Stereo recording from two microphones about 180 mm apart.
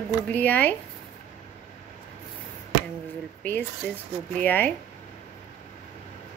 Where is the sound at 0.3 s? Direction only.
10° left (ahead or behind).